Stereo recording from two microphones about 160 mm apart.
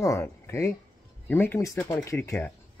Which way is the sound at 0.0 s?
15° left (ahead or behind).